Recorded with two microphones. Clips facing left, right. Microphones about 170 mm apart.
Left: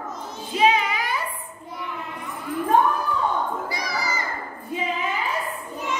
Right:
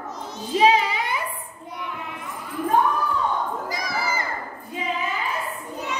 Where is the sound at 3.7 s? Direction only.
50° right (ahead or behind).